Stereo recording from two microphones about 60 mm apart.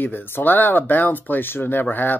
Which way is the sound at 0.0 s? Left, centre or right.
Left.